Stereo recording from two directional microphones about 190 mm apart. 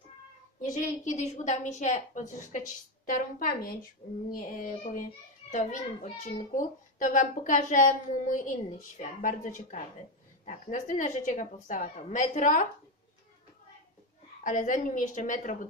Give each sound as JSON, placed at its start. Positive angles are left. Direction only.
{"t": 0.6, "sound": "a child's voice", "side_deg": 40}
{"t": 14.4, "sound": "a woman's voice", "side_deg": 45}